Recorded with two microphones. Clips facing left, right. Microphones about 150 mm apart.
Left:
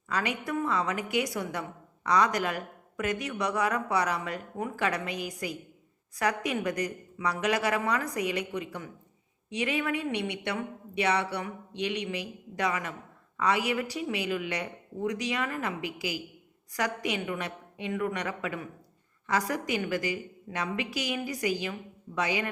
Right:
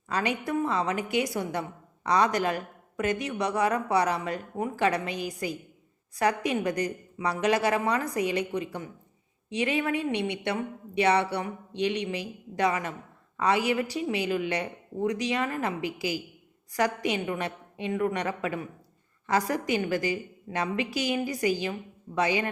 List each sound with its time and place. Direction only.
0.1 s a woman's voice: 30° right (ahead or behind)